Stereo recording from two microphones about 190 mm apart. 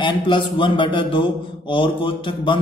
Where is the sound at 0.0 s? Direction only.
25° left (ahead or behind).